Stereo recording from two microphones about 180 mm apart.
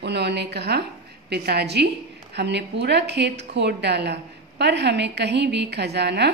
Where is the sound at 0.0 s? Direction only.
70° right (ahead or behind).